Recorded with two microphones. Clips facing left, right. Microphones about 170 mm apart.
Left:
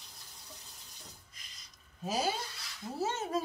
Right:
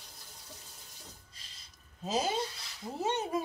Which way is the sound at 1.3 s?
30° right (ahead or behind).